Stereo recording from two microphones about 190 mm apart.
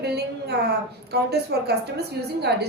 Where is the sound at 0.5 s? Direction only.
60° right (ahead or behind).